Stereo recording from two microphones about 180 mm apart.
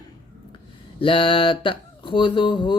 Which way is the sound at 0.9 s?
30° left (ahead or behind).